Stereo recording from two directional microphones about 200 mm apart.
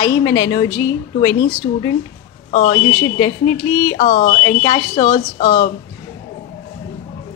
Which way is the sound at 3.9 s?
30° left (ahead or behind).